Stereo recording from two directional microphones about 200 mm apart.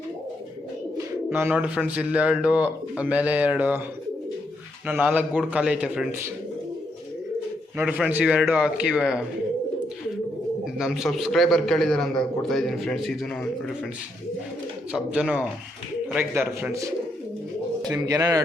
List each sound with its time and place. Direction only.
1.3 s a man's voice: 10° right (ahead or behind)
4.9 s a man's voice: 10° right (ahead or behind)
7.8 s a man's voice: 5° right (ahead or behind)
10.8 s a man's voice: centre (ahead or behind)
14.9 s a man's voice: 5° right (ahead or behind)